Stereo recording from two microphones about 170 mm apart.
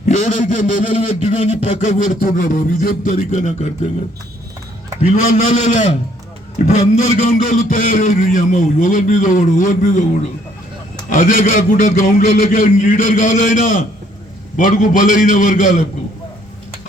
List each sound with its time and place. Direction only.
0.0 s a man's voice: 45° left (ahead or behind)
5.0 s a man's voice: 50° left (ahead or behind)
11.1 s a man's voice: 55° left (ahead or behind)